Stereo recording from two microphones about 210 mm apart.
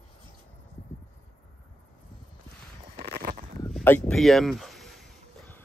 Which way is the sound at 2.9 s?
40° right (ahead or behind).